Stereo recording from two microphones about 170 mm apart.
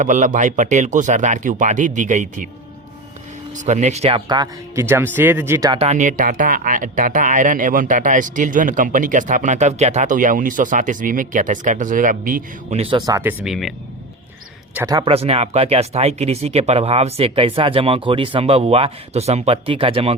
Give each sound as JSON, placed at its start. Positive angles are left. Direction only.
{"t": 0.0, "sound": "speech", "side_deg": -50}
{"t": 3.7, "sound": "speech", "side_deg": -45}
{"t": 4.3, "sound": "speech", "side_deg": -20}
{"t": 5.8, "sound": "speech", "side_deg": -45}
{"t": 12.7, "sound": "speech", "side_deg": -35}
{"t": 13.1, "sound": "speech", "side_deg": -20}
{"t": 13.4, "sound": "a man's voice", "side_deg": 0}
{"t": 15.0, "sound": "speech", "side_deg": -35}